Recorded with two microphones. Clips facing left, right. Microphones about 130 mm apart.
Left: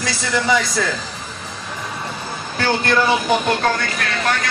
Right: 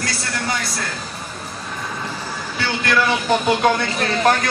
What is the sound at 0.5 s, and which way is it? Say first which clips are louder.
Speech: left 8 dB; 90° left.